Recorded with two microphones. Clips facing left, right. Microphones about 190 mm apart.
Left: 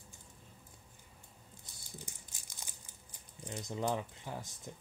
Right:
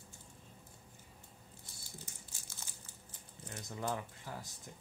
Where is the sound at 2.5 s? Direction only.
15° left (ahead or behind).